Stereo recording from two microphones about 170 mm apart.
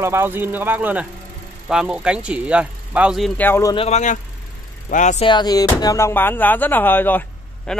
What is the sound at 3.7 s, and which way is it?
Speech, 40° left (ahead or behind).